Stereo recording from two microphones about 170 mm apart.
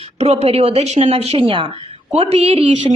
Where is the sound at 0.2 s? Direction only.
40° right (ahead or behind).